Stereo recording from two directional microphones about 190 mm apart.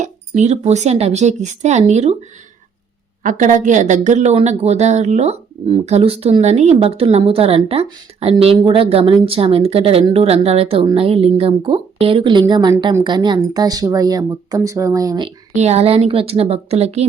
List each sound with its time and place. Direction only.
0.0 s speech: 35° right (ahead or behind)
3.2 s speech: 45° right (ahead or behind); by 15.3 s 20° right (ahead or behind)
15.5 s speech: 35° right (ahead or behind)